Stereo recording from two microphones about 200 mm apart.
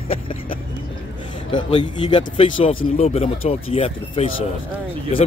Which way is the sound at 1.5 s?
25° left (ahead or behind).